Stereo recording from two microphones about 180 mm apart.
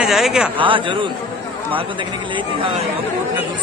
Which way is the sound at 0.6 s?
30° right (ahead or behind).